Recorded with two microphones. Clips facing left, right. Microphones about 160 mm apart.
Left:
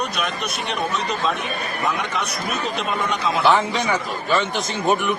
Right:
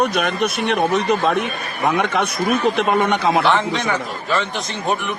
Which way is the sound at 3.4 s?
Centre (ahead or behind).